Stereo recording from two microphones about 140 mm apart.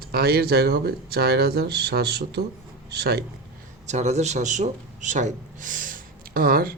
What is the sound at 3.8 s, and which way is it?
A man's voice, 55° right (ahead or behind).